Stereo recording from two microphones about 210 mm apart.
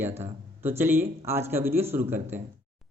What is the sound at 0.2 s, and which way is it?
A man's voice, 10° right (ahead or behind).